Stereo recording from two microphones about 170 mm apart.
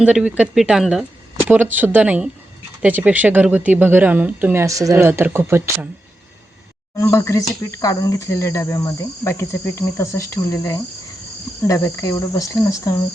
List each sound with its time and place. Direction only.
0.0 s speech: 5° right (ahead or behind)
6.9 s speech: 15° left (ahead or behind)